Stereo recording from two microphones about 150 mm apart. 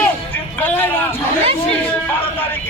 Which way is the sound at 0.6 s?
10° left (ahead or behind).